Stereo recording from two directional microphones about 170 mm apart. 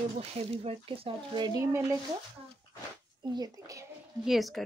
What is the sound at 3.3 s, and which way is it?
Speech, 20° right (ahead or behind).